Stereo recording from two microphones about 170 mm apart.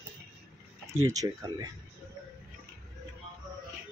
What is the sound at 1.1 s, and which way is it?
Speech, 20° right (ahead or behind).